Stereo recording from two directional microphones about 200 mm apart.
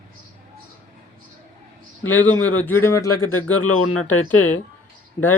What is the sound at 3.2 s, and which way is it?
Speech, 90° left.